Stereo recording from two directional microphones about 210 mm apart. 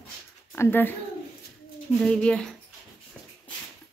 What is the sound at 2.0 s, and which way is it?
Speech, 5° left (ahead or behind).